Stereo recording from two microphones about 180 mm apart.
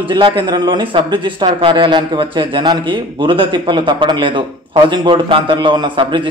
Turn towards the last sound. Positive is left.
turn(degrees=-25)  # may be behind; listen again after turning